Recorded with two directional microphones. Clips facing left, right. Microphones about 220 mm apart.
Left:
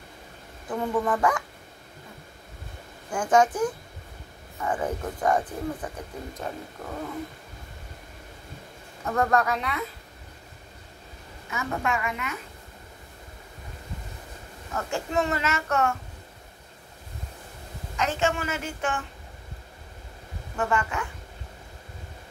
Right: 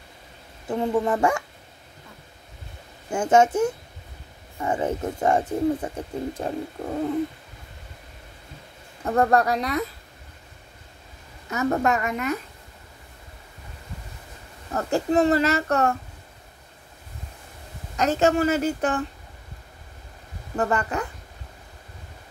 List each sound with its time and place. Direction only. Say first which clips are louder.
0.7 s speech: right 3 dB; 25° right (ahead or behind)
3.1 s speech: right 3 dB; 25° right (ahead or behind)
9.0 s a child's voice: right 4 dB; 35° right (ahead or behind)
11.5 s a child's voice: right 7 dB; 40° right (ahead or behind)
14.7 s a child's voice: right 7 dB; 35° right (ahead or behind)
17.9 s a child's voice: right 6 dB; 40° right (ahead or behind)
20.5 s a child's voice: right 3 dB; 40° right (ahead or behind)